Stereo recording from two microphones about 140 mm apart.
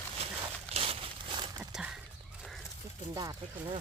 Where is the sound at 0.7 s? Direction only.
45° right (ahead or behind).